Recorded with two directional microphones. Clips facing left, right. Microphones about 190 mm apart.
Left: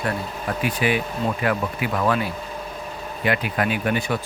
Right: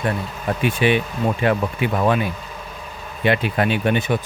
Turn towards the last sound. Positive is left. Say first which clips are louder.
# right 3 dB
turn(degrees=-25)  # may be behind; listen again after turning